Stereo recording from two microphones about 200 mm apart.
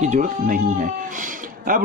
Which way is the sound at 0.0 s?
40° right (ahead or behind).